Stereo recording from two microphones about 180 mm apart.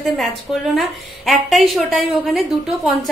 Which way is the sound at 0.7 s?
Centre (ahead or behind).